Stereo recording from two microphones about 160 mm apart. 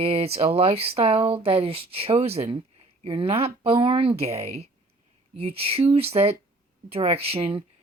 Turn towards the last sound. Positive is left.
turn(degrees=-35)  # may be behind; listen again after turning